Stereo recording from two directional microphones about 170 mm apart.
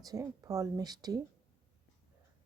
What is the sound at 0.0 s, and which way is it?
Speech, 20° right (ahead or behind).